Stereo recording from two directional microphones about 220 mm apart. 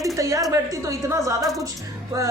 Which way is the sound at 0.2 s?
15° right (ahead or behind).